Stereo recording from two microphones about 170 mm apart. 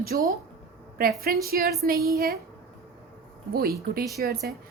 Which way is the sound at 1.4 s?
65° right (ahead or behind).